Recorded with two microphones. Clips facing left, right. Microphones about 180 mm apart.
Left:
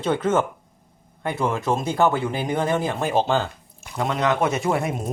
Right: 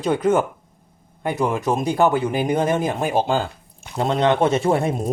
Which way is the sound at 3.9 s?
30° right (ahead or behind).